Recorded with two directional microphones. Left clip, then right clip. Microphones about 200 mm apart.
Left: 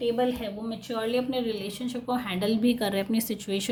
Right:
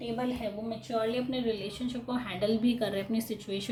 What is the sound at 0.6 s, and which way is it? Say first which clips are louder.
A woman's voice: left 1 dB; 40° left (ahead or behind).